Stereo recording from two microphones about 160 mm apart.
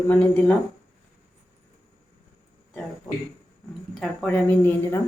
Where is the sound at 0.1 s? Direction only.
10° left (ahead or behind).